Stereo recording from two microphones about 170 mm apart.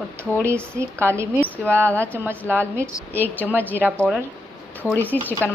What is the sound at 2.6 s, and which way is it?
Speech, 15° right (ahead or behind).